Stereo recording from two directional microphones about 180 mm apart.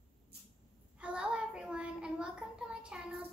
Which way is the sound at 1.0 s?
5° right (ahead or behind).